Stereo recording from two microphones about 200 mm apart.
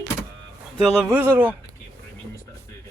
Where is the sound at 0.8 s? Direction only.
Centre (ahead or behind).